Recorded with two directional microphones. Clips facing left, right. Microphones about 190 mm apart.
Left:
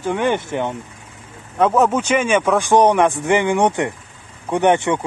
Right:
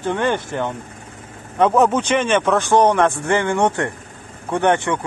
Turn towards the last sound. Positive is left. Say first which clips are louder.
# left 2 dB
turn(degrees=20)  # may be behind; listen again after turning